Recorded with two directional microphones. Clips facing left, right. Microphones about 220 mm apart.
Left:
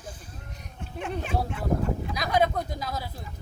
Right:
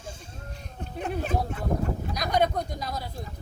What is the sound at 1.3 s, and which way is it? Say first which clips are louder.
Speech: right 1 dB; 40° right (ahead or behind).